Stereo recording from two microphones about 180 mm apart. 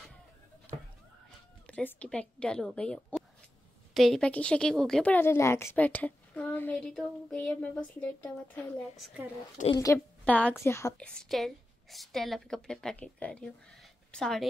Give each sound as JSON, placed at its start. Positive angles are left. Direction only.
{"t": 0.7, "sound": "a sound", "side_deg": 10}
{"t": 1.7, "sound": "a woman's voice", "side_deg": 10}
{"t": 9.6, "sound": "a woman's voice", "side_deg": 45}
{"t": 9.9, "sound": "a woman's voice", "side_deg": 5}
{"t": 11.0, "sound": "a woman's voice", "side_deg": 5}